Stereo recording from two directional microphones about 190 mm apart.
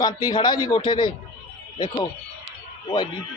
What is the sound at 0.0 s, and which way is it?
A man's voice, 20° left (ahead or behind).